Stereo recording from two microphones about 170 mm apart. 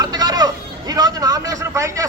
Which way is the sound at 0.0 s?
25° right (ahead or behind).